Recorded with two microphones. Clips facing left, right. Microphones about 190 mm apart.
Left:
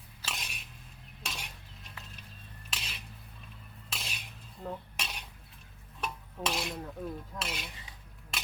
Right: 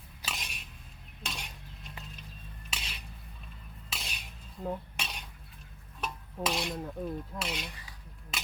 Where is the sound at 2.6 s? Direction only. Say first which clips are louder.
Even; centre (ahead or behind).